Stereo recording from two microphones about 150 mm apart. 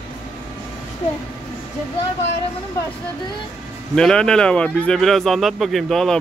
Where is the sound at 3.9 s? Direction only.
5° left (ahead or behind).